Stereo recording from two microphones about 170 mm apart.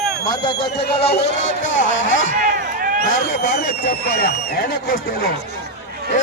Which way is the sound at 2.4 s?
55° right (ahead or behind).